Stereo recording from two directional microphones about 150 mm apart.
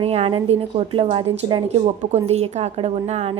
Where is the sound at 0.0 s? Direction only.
40° right (ahead or behind).